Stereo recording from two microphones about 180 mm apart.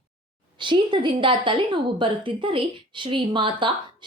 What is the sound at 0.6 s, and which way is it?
A woman's voice, 25° right (ahead or behind).